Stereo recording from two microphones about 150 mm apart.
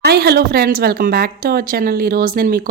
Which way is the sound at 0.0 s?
90° right.